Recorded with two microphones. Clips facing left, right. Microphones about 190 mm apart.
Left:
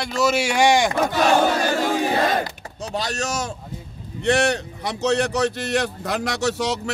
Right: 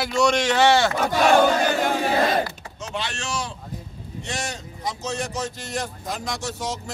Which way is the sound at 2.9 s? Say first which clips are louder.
Left 4 dB; 40° left (ahead or behind).